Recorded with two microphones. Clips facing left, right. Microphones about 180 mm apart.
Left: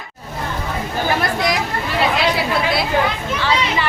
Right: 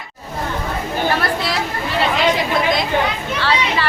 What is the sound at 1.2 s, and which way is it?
Chatter, 15° left (ahead or behind).